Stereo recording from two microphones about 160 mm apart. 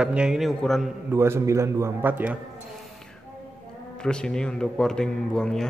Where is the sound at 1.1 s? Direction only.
15° right (ahead or behind).